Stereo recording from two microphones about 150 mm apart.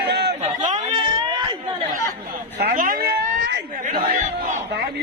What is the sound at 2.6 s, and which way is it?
Chatter, 75° right (ahead or behind).